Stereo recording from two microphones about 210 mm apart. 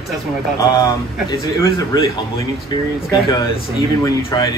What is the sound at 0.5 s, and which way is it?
A man's voice, 15° left (ahead or behind).